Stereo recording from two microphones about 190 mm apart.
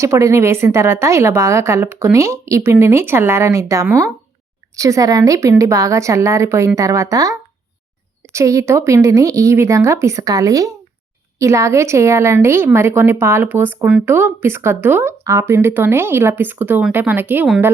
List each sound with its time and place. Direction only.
0.0 s a woman's voice: 15° right (ahead or behind)